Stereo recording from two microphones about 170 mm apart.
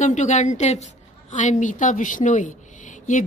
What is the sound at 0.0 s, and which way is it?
A woman's voice, 45° left (ahead or behind).